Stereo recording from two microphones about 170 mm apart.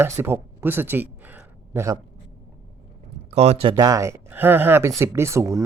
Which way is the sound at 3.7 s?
20° right (ahead or behind).